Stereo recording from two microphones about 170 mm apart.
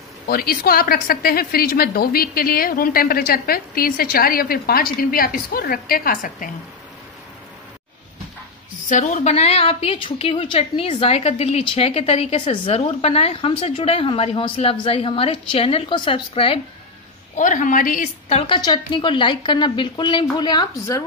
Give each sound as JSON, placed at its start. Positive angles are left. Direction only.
{"t": 0.3, "sound": "a woman's voice", "side_deg": 60}
{"t": 8.8, "sound": "a woman's voice", "side_deg": 45}
{"t": 17.4, "sound": "a woman's voice", "side_deg": 50}
{"t": 18.5, "sound": "a woman's voice", "side_deg": 25}